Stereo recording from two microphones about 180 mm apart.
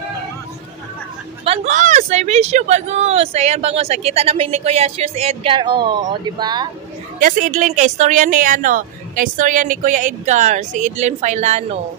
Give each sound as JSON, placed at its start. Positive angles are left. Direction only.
{"t": 1.4, "sound": "speech", "side_deg": -35}
{"t": 7.2, "sound": "speech", "side_deg": -50}